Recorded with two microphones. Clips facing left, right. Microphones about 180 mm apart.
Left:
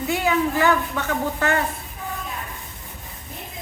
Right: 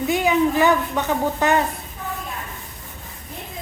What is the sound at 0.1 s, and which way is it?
Speech, 15° right (ahead or behind).